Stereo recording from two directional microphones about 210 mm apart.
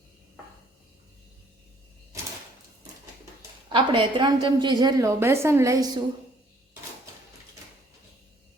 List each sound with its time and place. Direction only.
3.7 s a woman's voice: 25° right (ahead or behind)